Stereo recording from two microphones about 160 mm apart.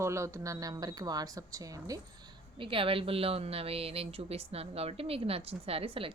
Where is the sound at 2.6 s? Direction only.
35° right (ahead or behind).